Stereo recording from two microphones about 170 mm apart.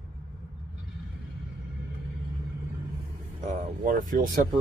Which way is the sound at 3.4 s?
50° right (ahead or behind).